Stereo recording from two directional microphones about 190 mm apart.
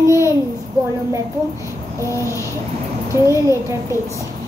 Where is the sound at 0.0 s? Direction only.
15° right (ahead or behind).